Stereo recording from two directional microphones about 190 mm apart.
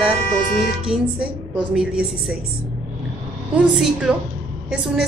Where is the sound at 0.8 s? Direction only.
5° right (ahead or behind).